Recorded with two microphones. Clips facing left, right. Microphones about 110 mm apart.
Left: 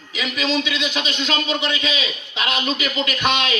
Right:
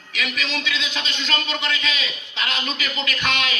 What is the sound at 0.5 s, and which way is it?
A man's voice, 15° left (ahead or behind).